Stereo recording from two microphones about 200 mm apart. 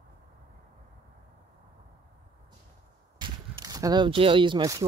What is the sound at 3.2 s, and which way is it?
Speech, 20° right (ahead or behind).